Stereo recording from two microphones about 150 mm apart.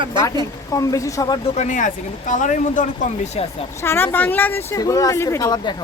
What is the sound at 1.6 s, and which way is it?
Speech, 60° left (ahead or behind).